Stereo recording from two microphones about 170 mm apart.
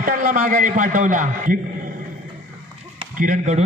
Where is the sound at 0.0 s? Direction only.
50° right (ahead or behind).